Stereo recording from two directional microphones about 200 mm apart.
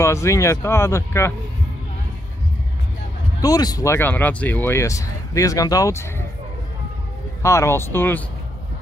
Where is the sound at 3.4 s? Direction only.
20° left (ahead or behind).